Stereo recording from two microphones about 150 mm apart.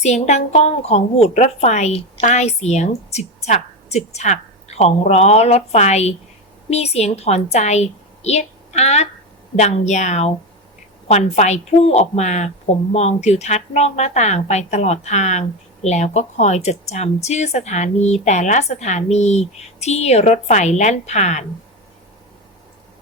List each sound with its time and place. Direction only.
0.0 s a woman's voice: 50° left (ahead or behind)